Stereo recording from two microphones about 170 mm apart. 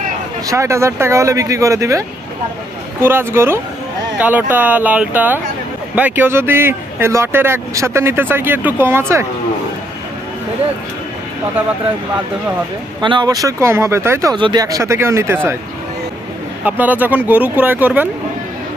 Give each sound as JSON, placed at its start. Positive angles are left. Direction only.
{"t": 0.5, "sound": "speech", "side_deg": -15}
{"t": 13.0, "sound": "speech", "side_deg": -25}
{"t": 16.6, "sound": "speech", "side_deg": -10}